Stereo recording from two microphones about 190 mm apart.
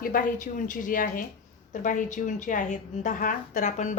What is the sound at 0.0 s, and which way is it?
A woman's voice, 45° left (ahead or behind).